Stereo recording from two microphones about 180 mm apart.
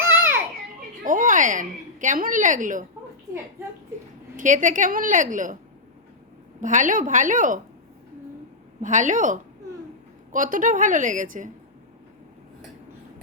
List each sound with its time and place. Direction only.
0.0 s children playing: 10° right (ahead or behind)
1.0 s a woman's voice: 45° right (ahead or behind)
4.4 s a woman's voice: 45° right (ahead or behind)
6.6 s a woman's voice: 45° right (ahead or behind)
8.8 s a woman's voice: 45° right (ahead or behind)